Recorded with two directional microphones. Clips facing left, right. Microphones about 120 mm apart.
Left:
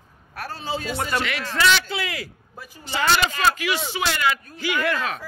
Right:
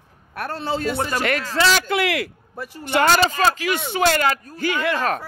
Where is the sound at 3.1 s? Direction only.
35° right (ahead or behind).